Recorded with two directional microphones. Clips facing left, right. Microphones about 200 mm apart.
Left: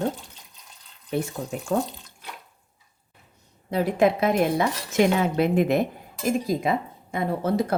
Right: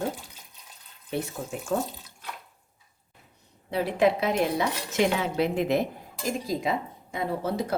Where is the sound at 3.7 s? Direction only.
45° left (ahead or behind).